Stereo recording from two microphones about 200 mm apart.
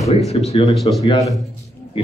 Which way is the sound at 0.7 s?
Centre (ahead or behind).